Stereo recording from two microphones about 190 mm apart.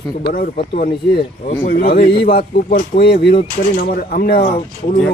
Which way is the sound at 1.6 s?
45° left (ahead or behind).